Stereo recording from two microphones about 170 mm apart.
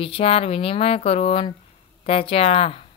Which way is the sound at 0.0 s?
35° left (ahead or behind).